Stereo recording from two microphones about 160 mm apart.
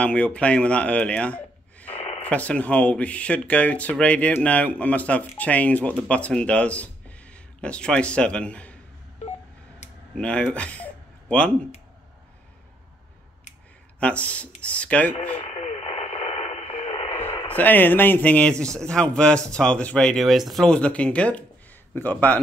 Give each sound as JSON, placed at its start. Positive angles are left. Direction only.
{"t": 0.0, "sound": "speech", "side_deg": 5}
{"t": 10.1, "sound": "speech", "side_deg": 5}
{"t": 13.9, "sound": "speech", "side_deg": 10}
{"t": 15.3, "sound": "radio", "side_deg": 40}
{"t": 17.1, "sound": "a sound", "side_deg": 15}
{"t": 17.5, "sound": "speech", "side_deg": 10}